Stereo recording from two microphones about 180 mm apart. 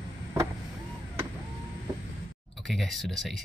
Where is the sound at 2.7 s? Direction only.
Centre (ahead or behind).